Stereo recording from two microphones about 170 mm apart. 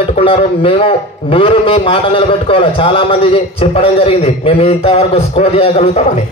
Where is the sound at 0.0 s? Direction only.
35° left (ahead or behind).